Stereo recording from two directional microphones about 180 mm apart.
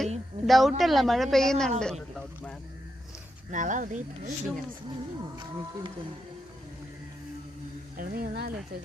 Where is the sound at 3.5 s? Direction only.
45° right (ahead or behind).